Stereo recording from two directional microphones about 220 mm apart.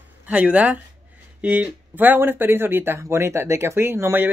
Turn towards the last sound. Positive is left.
turn(degrees=-10)  # may be behind; listen again after turning